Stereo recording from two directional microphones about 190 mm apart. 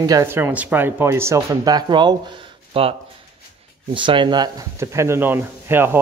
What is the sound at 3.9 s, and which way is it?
Speech, 25° right (ahead or behind).